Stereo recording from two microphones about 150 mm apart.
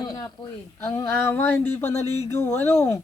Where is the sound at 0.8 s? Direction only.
20° left (ahead or behind).